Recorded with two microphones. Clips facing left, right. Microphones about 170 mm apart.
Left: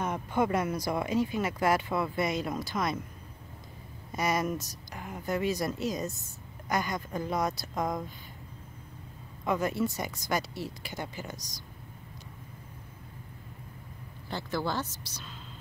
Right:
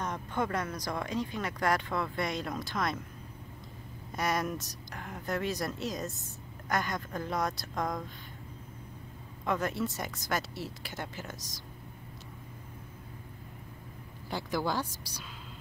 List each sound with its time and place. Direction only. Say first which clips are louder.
0.0 s speech: left 4 dB; 10° left (ahead or behind)
4.1 s speech: left 2 dB; centre (ahead or behind)
9.4 s speech: left 3 dB; centre (ahead or behind)
14.3 s speech: even; 10° right (ahead or behind)